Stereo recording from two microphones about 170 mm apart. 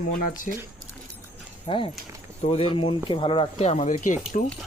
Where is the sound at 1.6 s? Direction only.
30° left (ahead or behind).